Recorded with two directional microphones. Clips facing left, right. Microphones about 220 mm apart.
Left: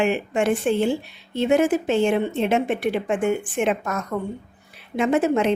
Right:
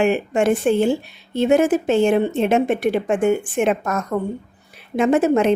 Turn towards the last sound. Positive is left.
turn(degrees=-45)  # may be behind; listen again after turning